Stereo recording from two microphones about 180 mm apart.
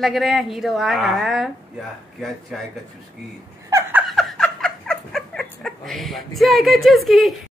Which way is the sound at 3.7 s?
10° right (ahead or behind).